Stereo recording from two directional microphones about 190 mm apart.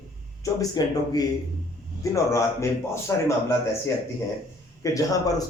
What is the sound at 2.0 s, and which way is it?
A man's voice, 15° left (ahead or behind).